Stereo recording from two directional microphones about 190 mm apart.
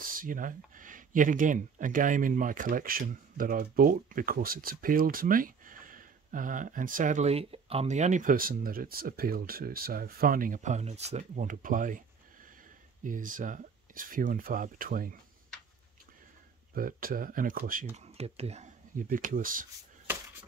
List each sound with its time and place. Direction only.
0.0 s speech: 45° right (ahead or behind)
13.0 s speech: 45° right (ahead or behind)
16.7 s speech: 50° right (ahead or behind)
17.9 s speech: 35° right (ahead or behind)